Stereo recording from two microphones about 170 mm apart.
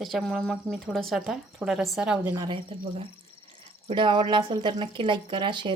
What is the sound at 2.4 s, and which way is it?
Speech, 30° right (ahead or behind).